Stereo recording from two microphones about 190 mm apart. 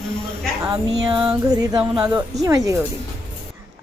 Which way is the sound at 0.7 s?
20° right (ahead or behind).